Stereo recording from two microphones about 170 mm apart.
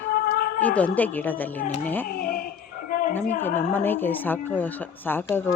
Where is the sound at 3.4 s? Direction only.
10° left (ahead or behind).